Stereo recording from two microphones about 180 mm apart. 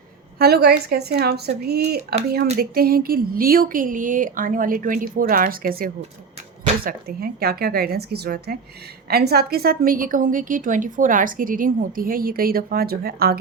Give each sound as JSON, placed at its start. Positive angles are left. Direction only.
{"t": 0.3, "sound": "a woman's voice", "side_deg": -60}